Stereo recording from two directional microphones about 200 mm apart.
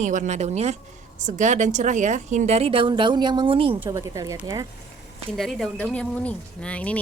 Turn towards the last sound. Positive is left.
turn(degrees=5)  # may be behind; listen again after turning